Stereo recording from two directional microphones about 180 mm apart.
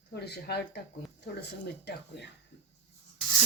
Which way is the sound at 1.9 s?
65° left (ahead or behind).